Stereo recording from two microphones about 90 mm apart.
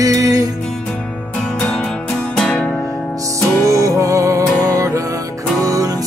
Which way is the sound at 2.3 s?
10° left (ahead or behind).